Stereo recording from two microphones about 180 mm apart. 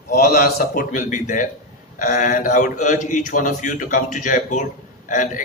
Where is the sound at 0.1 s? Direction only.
55° left (ahead or behind).